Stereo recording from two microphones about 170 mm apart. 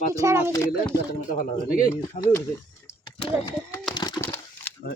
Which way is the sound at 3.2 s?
25° left (ahead or behind).